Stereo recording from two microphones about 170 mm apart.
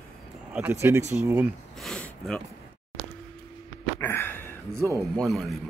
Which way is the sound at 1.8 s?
5° left (ahead or behind).